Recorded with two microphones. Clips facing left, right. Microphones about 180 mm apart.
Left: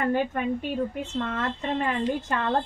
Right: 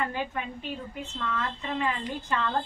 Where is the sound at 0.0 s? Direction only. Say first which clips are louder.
Left 7 dB; 50° left (ahead or behind).